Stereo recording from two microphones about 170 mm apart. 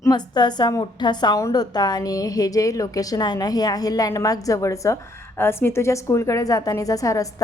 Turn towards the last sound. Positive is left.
turn(degrees=20)  # may be behind; listen again after turning